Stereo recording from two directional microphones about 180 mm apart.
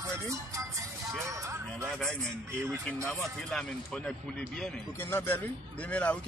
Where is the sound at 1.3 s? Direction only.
15° right (ahead or behind).